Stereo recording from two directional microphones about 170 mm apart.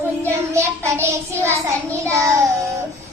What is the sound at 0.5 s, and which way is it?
Child singing, 15° right (ahead or behind).